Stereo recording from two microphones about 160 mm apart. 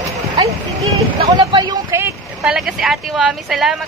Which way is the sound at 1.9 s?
15° right (ahead or behind).